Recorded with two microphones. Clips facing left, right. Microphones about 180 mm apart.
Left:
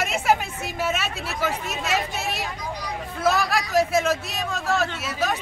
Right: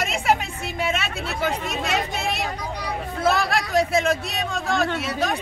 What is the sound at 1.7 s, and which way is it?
Speech, 60° right (ahead or behind).